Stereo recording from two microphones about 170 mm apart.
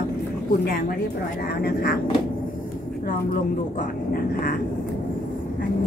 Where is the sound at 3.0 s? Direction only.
55° left (ahead or behind).